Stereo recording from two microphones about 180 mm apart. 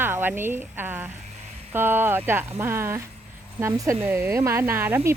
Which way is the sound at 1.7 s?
10° right (ahead or behind).